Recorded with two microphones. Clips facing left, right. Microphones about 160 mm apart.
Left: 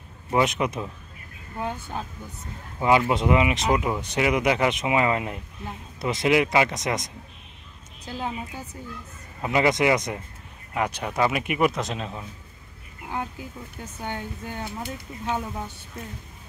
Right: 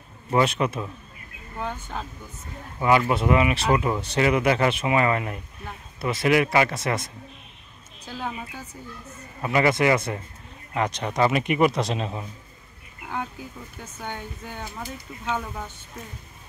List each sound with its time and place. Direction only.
0.3 s a man's voice: 15° left (ahead or behind); by 12.2 s centre (ahead or behind)
15.2 s speech: 15° left (ahead or behind)